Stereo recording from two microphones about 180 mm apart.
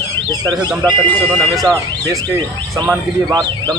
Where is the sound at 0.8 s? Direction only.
10° left (ahead or behind).